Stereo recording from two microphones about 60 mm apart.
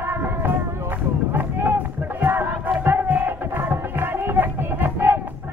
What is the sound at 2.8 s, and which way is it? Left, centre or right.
Music, right.